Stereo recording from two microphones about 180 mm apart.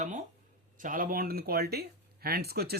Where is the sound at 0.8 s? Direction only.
50° right (ahead or behind).